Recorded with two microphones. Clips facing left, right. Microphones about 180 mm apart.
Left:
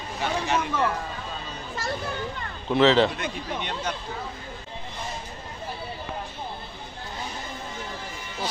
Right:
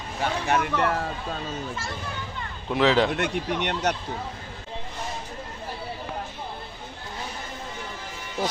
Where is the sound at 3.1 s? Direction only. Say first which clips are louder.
Right 5 dB; 80° right.